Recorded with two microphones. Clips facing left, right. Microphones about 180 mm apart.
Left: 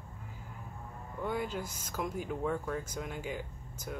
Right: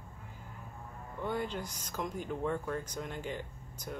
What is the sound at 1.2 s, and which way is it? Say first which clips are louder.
Speech: even; 5° left (ahead or behind).